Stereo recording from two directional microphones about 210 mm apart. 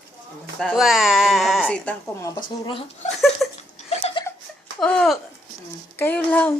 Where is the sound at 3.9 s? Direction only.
30° left (ahead or behind).